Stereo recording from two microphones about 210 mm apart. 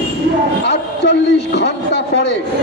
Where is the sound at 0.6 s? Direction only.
55° left (ahead or behind).